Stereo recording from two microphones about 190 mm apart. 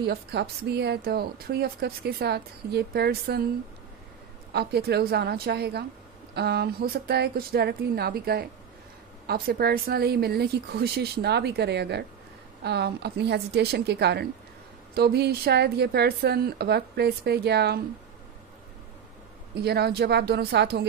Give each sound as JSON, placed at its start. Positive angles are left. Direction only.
{"t": 0.0, "sound": "a woman's voice", "side_deg": -55}
{"t": 4.5, "sound": "a woman's voice", "side_deg": -60}
{"t": 19.6, "sound": "a woman's voice", "side_deg": -55}